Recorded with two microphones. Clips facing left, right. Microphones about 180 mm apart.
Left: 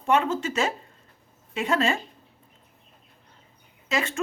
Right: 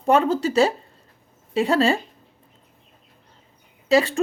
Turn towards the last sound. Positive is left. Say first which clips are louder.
# right 9 dB
turn(degrees=-35)  # may be behind; listen again after turning